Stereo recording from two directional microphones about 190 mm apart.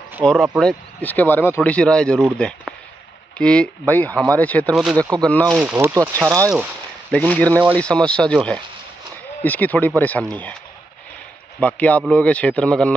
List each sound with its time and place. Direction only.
0.2 s speech: 5° left (ahead or behind)
5.6 s speech: 10° right (ahead or behind)
7.1 s speech: 5° left (ahead or behind)
9.4 s speech: 10° left (ahead or behind)
11.6 s speech: 10° left (ahead or behind)